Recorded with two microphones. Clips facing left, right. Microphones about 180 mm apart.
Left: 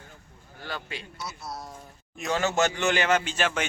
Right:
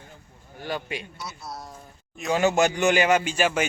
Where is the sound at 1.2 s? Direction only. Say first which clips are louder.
Even; centre (ahead or behind).